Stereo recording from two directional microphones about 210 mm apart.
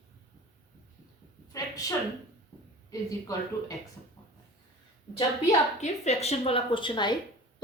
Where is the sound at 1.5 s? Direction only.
15° left (ahead or behind).